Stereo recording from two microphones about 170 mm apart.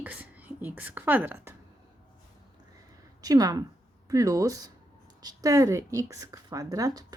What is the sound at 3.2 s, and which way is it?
A woman's voice, 20° right (ahead or behind).